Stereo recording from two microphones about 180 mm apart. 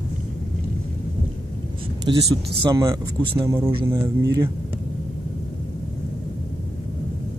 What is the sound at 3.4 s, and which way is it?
Speech, 15° right (ahead or behind).